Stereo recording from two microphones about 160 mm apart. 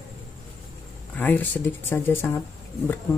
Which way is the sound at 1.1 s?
10° left (ahead or behind).